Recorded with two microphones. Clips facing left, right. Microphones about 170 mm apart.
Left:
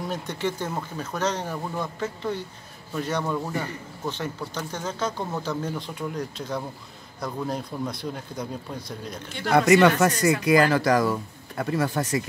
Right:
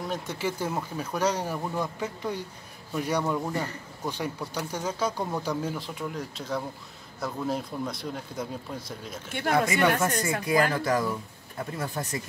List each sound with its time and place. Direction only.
0.1 s a man's voice: 5° right (ahead or behind)
9.5 s speech: 80° left